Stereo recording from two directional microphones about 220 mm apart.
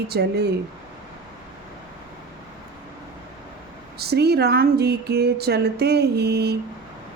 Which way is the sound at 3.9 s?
45° right (ahead or behind).